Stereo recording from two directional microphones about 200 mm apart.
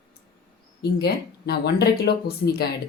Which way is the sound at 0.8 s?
55° left (ahead or behind).